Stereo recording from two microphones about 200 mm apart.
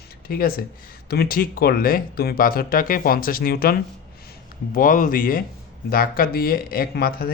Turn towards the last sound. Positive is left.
turn(degrees=50)  # may be behind; listen again after turning